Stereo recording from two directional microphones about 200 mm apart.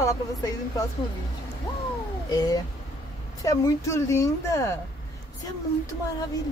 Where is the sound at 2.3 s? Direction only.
20° left (ahead or behind).